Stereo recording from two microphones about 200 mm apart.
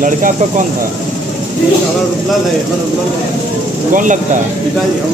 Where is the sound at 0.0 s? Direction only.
40° right (ahead or behind).